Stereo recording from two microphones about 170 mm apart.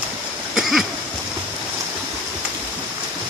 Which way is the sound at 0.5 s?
Centre (ahead or behind).